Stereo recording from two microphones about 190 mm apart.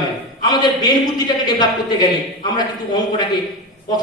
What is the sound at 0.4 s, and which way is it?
Speech, 20° left (ahead or behind).